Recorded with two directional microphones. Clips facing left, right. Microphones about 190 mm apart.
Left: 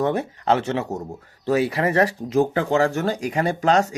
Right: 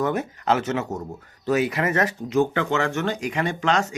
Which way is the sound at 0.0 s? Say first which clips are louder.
Left 2 dB; 30° left (ahead or behind).